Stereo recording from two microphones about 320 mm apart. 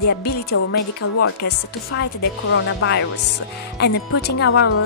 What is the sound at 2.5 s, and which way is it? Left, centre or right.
Speech, left.